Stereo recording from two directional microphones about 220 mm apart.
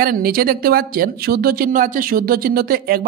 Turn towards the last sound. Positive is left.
turn(degrees=-40)  # may be behind; listen again after turning